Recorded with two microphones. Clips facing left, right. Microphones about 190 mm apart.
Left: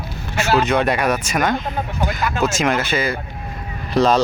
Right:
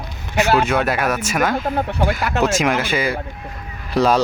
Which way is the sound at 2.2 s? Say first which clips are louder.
Left 3 dB; 70° right (ahead or behind).